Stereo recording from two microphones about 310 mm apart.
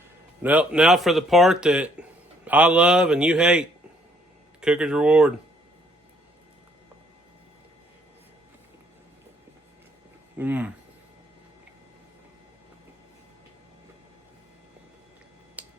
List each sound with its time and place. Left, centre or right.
0.4 s speech: centre
10.3 s speech: centre
15.6 s tick-tock: centre